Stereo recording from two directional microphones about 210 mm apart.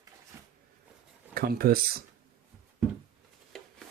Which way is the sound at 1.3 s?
45° right (ahead or behind).